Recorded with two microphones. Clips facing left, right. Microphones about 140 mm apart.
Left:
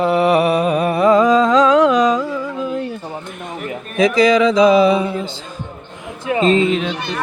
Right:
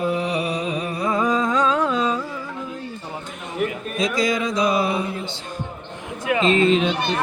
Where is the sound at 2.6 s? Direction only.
70° left (ahead or behind).